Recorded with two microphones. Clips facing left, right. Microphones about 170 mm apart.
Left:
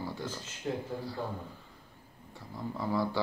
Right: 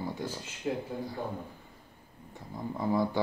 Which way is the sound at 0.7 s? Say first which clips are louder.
Right 2 dB; 5° right (ahead or behind).